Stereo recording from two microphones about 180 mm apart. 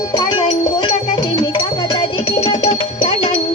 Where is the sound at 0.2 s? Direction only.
25° left (ahead or behind).